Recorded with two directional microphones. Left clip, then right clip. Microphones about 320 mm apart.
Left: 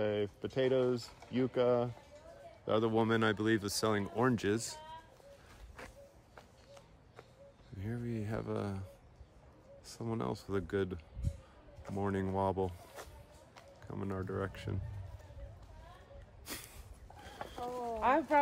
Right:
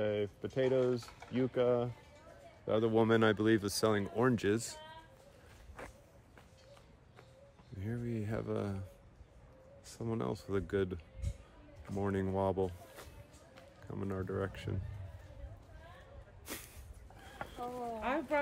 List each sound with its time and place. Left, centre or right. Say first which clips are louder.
0.0 s a sound: even; centre
0.6 s speech: even; centre
7.8 s speech: right 1 dB; centre
9.8 s speech: even; centre
13.8 s speech: even; centre
16.4 s snort: even; centre
17.4 s a sound: right 1 dB; centre
18.0 s speech: left 6 dB; centre